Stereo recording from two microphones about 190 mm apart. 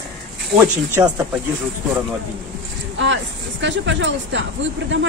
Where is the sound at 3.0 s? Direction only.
75° right (ahead or behind).